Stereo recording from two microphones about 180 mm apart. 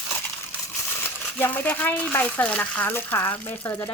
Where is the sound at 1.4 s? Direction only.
10° left (ahead or behind).